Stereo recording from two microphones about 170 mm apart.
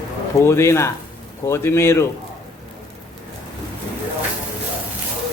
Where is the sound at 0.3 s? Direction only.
15° left (ahead or behind).